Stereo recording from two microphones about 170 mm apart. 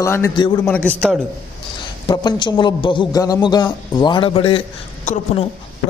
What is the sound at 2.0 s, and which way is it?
A man's voice, 30° left (ahead or behind).